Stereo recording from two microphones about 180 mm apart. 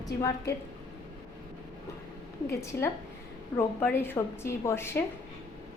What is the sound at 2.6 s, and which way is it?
A woman's voice, 15° left (ahead or behind).